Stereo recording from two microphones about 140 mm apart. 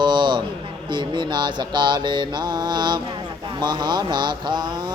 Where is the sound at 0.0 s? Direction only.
35° right (ahead or behind).